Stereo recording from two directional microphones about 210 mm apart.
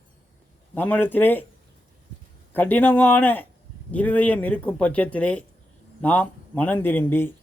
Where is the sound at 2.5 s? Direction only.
10° left (ahead or behind).